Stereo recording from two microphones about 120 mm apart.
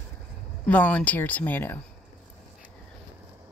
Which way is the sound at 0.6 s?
10° left (ahead or behind).